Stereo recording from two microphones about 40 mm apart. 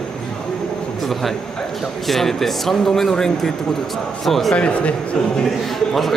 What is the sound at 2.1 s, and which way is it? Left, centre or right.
Speech, centre.